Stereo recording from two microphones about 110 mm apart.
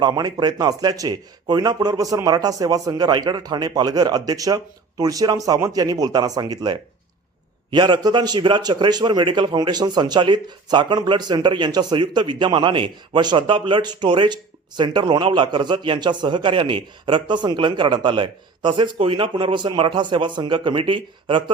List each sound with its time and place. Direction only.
0.0 s a man's voice: 35° right (ahead or behind)